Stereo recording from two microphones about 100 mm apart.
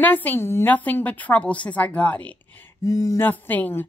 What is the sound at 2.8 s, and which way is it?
Speech, 35° left (ahead or behind).